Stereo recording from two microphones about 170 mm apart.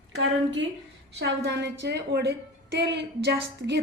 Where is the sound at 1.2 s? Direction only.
90° right.